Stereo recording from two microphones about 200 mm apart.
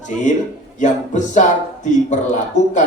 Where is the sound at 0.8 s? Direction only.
40° left (ahead or behind).